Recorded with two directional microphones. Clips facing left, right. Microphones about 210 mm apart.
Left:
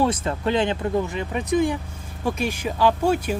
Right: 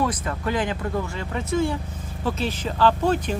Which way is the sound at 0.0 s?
25° left (ahead or behind).